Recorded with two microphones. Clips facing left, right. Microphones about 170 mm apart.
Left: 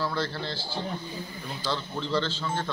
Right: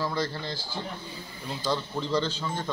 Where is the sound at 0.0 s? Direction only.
15° right (ahead or behind).